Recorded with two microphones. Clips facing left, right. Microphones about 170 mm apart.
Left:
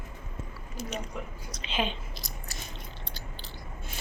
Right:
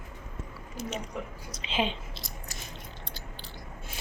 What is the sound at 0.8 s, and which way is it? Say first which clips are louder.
Speech: right 1 dB; 20° right (ahead or behind).